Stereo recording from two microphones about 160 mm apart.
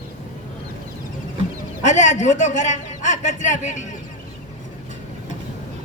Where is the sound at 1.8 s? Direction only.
50° left (ahead or behind).